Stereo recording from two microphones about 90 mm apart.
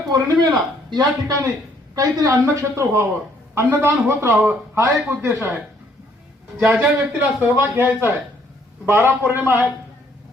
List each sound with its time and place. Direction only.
0.1 s a man's voice: 50° right (ahead or behind)
2.0 s a woman's voice: 35° right (ahead or behind)
6.7 s speech: 15° right (ahead or behind)